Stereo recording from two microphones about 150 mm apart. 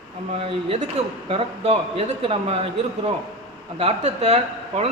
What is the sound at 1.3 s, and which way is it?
Speech, 40° right (ahead or behind).